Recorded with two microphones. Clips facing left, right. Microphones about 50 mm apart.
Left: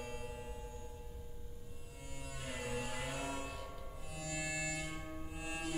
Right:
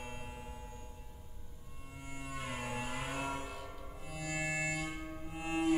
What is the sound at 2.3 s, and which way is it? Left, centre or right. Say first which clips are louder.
Music: right 2 dB; right.